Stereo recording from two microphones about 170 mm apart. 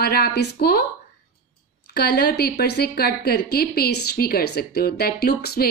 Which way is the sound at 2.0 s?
70° left (ahead or behind).